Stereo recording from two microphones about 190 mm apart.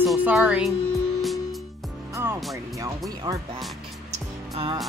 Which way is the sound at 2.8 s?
20° right (ahead or behind).